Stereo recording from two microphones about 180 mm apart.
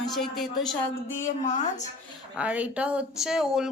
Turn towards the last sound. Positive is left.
turn(degrees=-5)  # may be behind; listen again after turning